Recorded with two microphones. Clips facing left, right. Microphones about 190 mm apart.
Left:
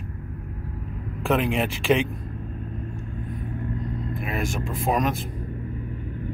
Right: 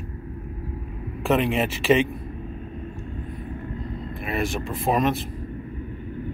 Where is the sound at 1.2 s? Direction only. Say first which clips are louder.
Right 1 dB; centre (ahead or behind).